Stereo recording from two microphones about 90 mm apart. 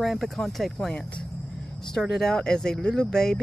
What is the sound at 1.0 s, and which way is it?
Speech, 15° left (ahead or behind).